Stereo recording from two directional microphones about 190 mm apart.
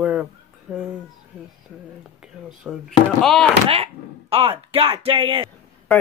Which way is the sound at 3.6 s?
30° right (ahead or behind).